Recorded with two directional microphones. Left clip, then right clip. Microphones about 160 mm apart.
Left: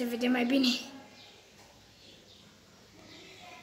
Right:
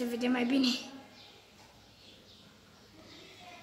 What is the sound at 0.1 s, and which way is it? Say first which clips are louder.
Speech: left 3 dB; 10° left (ahead or behind).